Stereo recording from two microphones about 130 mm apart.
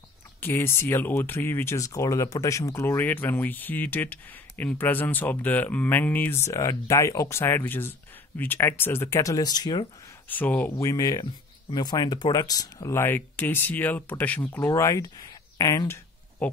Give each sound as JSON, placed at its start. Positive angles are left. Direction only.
{"t": 0.4, "sound": "speech", "side_deg": 15}
{"t": 10.2, "sound": "speech", "side_deg": 15}
{"t": 10.8, "sound": "speech", "side_deg": 25}
{"t": 14.7, "sound": "speech", "side_deg": 25}